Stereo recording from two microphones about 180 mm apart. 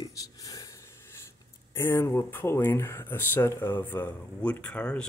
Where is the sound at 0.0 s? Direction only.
20° left (ahead or behind).